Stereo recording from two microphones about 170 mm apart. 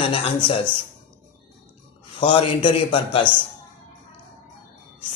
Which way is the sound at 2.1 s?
30° left (ahead or behind).